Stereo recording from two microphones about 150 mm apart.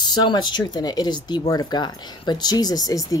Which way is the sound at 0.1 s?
30° left (ahead or behind).